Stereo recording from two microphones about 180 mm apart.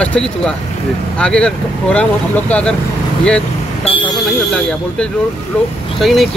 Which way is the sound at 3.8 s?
30° left (ahead or behind).